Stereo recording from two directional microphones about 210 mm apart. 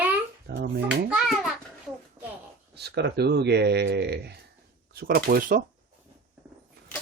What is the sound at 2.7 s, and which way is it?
Speech, 50° right (ahead or behind).